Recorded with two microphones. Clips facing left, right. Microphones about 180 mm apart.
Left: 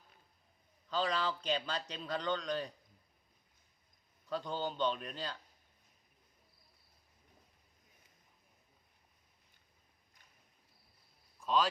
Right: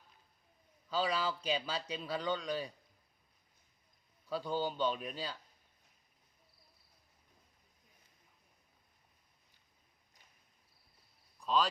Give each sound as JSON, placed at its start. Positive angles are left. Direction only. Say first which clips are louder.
{"t": 0.9, "sound": "speech", "louder": "even", "side_deg": -10}
{"t": 4.3, "sound": "speech", "louder": "right 2 dB", "side_deg": -10}
{"t": 11.3, "sound": "a sound", "louder": "even", "side_deg": 0}